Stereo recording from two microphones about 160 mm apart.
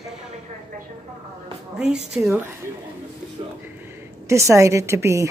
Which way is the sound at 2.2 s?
5° right (ahead or behind).